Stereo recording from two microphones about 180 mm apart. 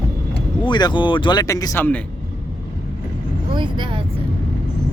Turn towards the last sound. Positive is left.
turn(degrees=-25)  # may be behind; listen again after turning